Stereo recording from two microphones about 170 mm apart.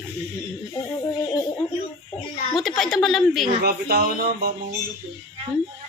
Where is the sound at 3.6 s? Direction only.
65° right (ahead or behind).